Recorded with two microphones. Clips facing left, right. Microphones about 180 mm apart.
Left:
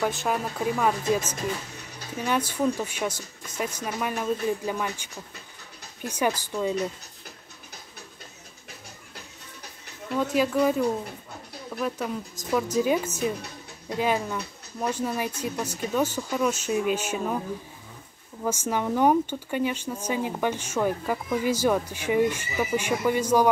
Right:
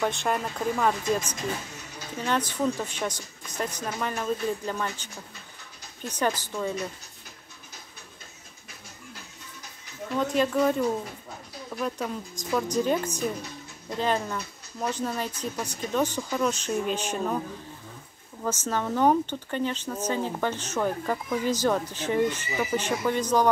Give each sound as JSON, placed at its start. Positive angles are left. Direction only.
{"t": 0.0, "sound": "a woman's voice", "side_deg": 5}
{"t": 10.1, "sound": "a woman's voice", "side_deg": 5}
{"t": 18.4, "sound": "speech", "side_deg": 10}